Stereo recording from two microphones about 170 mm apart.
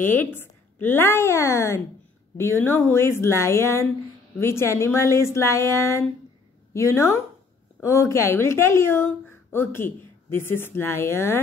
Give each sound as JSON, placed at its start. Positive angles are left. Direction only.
{"t": 0.0, "sound": "a woman's voice", "side_deg": 10}